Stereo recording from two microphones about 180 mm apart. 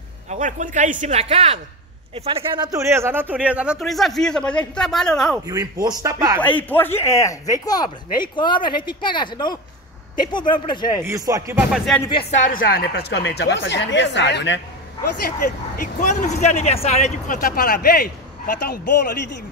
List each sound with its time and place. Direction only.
0.3 s speech: 45° right (ahead or behind); by 5.4 s centre (ahead or behind)
5.4 s speech: 20° right (ahead or behind)
6.4 s speech: 10° left (ahead or behind); by 11.0 s 25° left (ahead or behind)
11.0 s speech: 15° right (ahead or behind)
11.7 s speech: centre (ahead or behind)
12.4 s speech: 55° left (ahead or behind); by 14.6 s 80° left
15.2 s speech: 50° left (ahead or behind)
17.4 s a man's voice: 55° left (ahead or behind)